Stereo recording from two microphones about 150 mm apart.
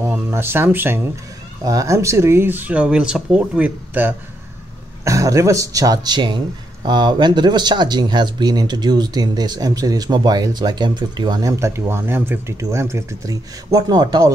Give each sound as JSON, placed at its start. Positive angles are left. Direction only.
{"t": 0.0, "sound": "speech", "side_deg": -15}
{"t": 5.0, "sound": "speech", "side_deg": -20}